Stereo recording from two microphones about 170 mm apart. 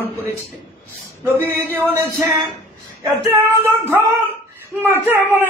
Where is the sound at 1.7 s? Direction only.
10° right (ahead or behind).